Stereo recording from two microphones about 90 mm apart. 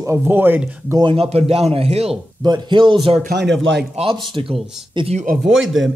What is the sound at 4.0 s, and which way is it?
Speech, 75° right (ahead or behind).